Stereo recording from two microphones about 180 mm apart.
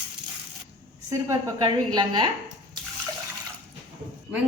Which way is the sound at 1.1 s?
20° right (ahead or behind).